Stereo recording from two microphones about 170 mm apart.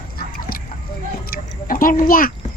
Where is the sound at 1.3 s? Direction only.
55° left (ahead or behind).